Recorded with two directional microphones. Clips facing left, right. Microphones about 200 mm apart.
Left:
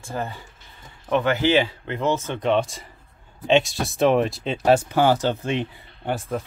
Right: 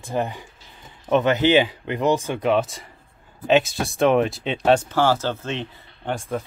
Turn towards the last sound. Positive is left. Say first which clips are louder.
# even
turn(degrees=10)  # may be behind; listen again after turning